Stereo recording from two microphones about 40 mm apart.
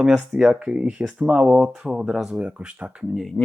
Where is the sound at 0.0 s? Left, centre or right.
Centre.